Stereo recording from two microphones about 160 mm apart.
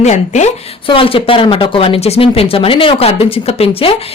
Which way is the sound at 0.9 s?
35° left (ahead or behind).